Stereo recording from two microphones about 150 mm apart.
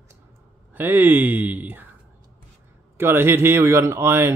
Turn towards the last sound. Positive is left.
turn(degrees=-15)  # may be behind; listen again after turning